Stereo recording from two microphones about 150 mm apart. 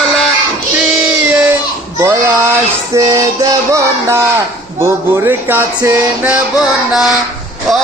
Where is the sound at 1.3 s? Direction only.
10° right (ahead or behind).